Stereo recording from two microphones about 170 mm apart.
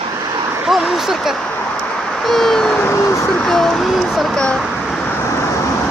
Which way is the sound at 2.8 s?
15° left (ahead or behind).